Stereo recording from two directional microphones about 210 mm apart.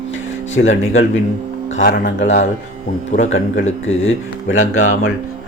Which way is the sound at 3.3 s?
65° left (ahead or behind).